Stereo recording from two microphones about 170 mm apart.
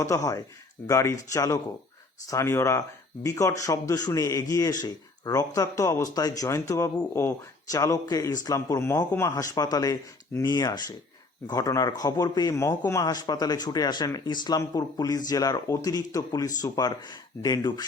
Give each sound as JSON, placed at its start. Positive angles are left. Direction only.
{"t": 0.0, "sound": "speech", "side_deg": 20}